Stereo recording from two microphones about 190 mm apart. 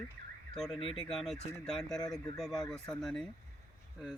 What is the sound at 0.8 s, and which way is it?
Speech, 30° left (ahead or behind).